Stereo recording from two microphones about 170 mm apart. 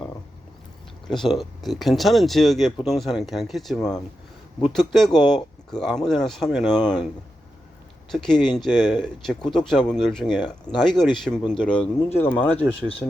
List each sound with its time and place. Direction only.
1.3 s speech: centre (ahead or behind)
6.7 s speech: 25° left (ahead or behind)
8.1 s speech: centre (ahead or behind)
12.4 s speech: 35° left (ahead or behind)